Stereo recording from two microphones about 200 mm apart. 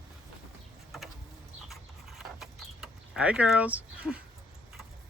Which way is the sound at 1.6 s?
Centre (ahead or behind).